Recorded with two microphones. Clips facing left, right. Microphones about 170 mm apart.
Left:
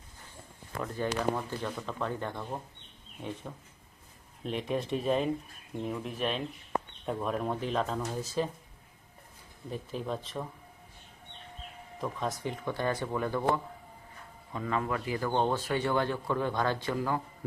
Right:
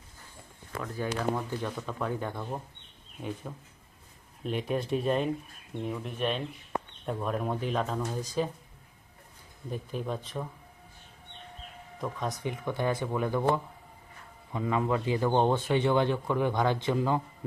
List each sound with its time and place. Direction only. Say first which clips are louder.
0.9 s speech: even; 10° right (ahead or behind)
9.6 s speech: right 1 dB; 5° right (ahead or behind)
11.9 s speech: even; centre (ahead or behind)
12.5 s speech: right 3 dB; 15° right (ahead or behind)